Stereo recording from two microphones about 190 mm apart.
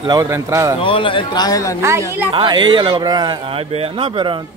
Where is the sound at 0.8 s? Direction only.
25° left (ahead or behind).